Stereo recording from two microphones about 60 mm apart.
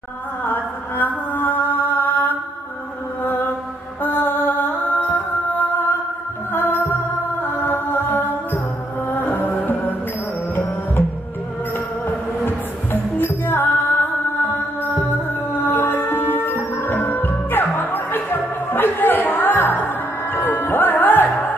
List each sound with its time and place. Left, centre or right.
0.5 s mantra: left
4.0 s music: left
12.4 s music: left
15.6 s music: left